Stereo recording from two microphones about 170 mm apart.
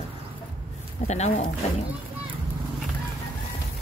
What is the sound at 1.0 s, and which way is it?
Speech, 40° left (ahead or behind).